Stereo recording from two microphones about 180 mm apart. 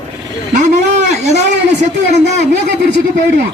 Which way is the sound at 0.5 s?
40° right (ahead or behind).